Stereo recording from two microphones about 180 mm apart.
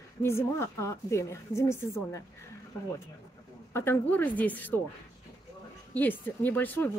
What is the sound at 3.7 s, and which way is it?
Speech, 15° left (ahead or behind).